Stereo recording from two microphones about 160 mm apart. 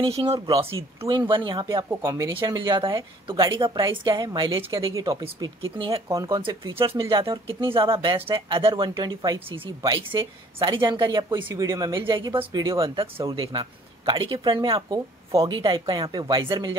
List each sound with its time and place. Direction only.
0.0 s speech: 35° right (ahead or behind); by 2.2 s 20° right (ahead or behind)
2.4 s speech: 30° right (ahead or behind)
4.6 s speech: 35° right (ahead or behind)
4.8 s speech: 20° right (ahead or behind)